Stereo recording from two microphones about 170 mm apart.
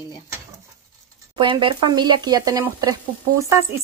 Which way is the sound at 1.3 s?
30° right (ahead or behind).